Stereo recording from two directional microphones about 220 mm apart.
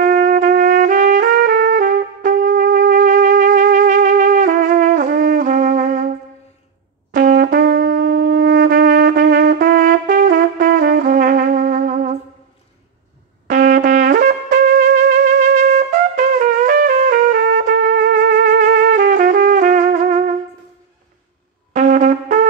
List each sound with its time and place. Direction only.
0.0 s trumpet: 40° right (ahead or behind)
7.1 s wind instrument: 40° right (ahead or behind)
13.5 s trumpet: 40° right (ahead or behind)
21.7 s brass instrument: 35° right (ahead or behind)